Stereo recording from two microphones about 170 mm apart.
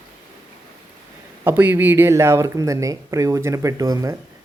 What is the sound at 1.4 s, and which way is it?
Speech, 10° right (ahead or behind).